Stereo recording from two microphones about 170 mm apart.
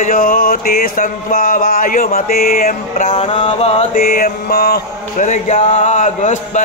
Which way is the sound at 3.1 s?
35° left (ahead or behind).